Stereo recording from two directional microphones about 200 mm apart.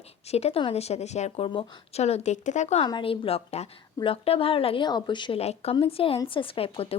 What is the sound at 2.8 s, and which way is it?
A woman's voice, 25° left (ahead or behind).